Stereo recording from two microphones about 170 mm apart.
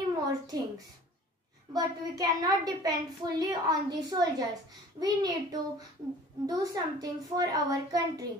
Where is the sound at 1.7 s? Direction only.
25° right (ahead or behind).